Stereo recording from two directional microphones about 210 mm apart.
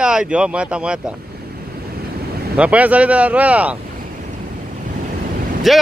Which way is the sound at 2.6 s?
5° right (ahead or behind).